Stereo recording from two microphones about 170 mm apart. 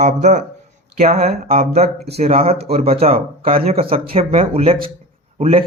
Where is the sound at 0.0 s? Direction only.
45° right (ahead or behind).